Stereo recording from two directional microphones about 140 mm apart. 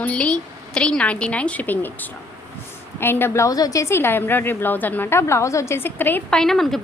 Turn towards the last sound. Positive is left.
turn(degrees=0)  # may be behind; listen again after turning